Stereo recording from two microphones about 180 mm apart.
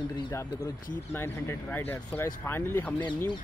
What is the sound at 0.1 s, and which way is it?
Speech, 20° left (ahead or behind).